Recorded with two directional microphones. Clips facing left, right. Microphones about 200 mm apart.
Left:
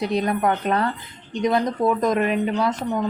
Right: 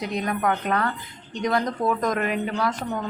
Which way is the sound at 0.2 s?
30° left (ahead or behind).